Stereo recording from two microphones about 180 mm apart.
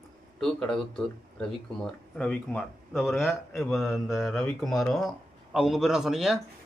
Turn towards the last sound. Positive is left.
turn(degrees=0)  # may be behind; listen again after turning